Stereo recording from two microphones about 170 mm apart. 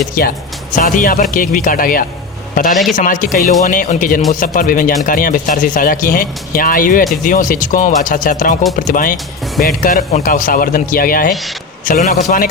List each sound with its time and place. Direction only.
0.1 s speech: 60° left (ahead or behind)